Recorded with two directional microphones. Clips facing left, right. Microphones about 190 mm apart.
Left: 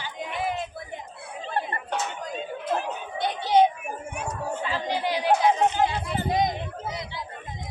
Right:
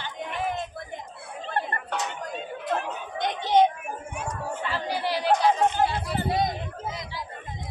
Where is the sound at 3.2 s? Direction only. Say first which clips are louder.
Left 1 dB; 10° left (ahead or behind).